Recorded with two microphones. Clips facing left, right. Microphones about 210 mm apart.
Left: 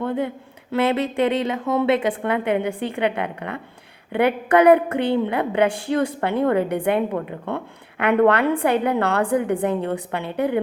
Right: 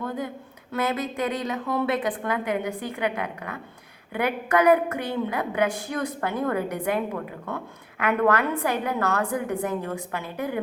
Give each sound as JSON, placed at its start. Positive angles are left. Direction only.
{"t": 0.0, "sound": "a woman's voice", "side_deg": 30}